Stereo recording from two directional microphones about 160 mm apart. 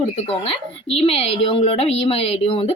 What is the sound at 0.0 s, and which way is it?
A woman's voice, 35° left (ahead or behind).